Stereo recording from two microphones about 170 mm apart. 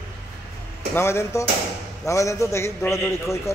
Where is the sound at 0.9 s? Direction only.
15° left (ahead or behind).